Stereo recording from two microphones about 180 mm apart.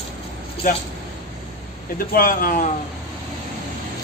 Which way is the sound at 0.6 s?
50° left (ahead or behind).